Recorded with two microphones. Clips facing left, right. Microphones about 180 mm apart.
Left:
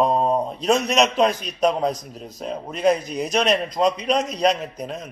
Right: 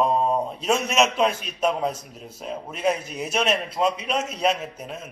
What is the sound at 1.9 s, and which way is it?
Speech, 35° left (ahead or behind).